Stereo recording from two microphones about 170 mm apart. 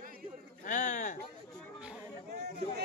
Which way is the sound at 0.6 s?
50° left (ahead or behind).